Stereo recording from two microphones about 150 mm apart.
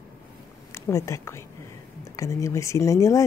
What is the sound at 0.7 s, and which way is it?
A woman's voice, 20° left (ahead or behind).